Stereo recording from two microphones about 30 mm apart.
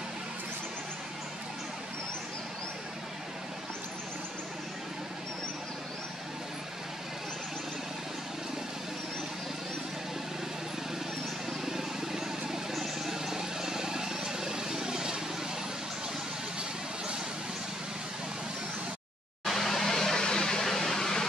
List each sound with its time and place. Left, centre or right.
11.6 s vehicle: centre
19.4 s vehicle: centre; by 20.6 s left
20.6 s a sound: centre